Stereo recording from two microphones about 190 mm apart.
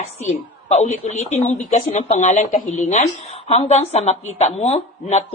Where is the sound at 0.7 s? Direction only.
35° left (ahead or behind).